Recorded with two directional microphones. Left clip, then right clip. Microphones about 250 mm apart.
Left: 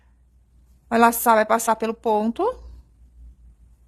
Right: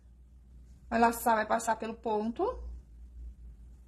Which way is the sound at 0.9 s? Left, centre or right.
Left.